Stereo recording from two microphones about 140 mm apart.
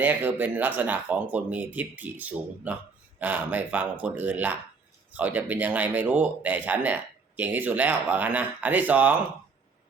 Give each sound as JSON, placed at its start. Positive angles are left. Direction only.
{"t": 0.0, "sound": "speech", "side_deg": -15}